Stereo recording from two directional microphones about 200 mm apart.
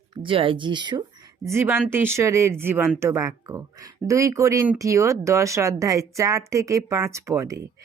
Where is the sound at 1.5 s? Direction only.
10° right (ahead or behind).